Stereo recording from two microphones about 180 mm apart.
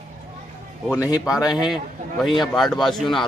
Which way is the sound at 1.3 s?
5° right (ahead or behind).